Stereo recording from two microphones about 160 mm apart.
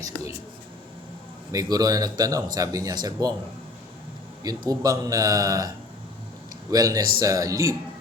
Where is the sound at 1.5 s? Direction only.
25° right (ahead or behind).